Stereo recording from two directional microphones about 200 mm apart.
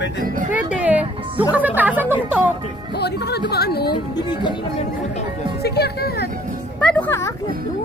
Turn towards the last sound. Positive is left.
turn(degrees=10)  # may be behind; listen again after turning